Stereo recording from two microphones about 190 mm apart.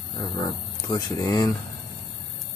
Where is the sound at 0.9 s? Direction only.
20° left (ahead or behind).